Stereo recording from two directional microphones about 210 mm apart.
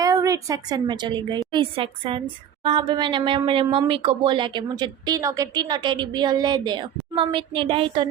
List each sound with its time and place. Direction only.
0.0 s a woman's voice: 15° right (ahead or behind)